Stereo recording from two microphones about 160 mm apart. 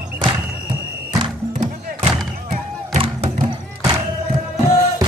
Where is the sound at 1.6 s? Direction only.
40° right (ahead or behind).